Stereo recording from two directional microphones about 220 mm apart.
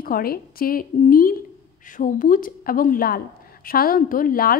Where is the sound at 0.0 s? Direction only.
40° left (ahead or behind).